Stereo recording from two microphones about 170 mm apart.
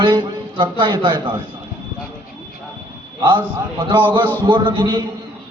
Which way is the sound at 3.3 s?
25° right (ahead or behind).